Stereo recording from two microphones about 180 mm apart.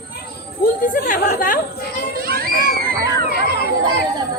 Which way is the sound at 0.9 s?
55° left (ahead or behind).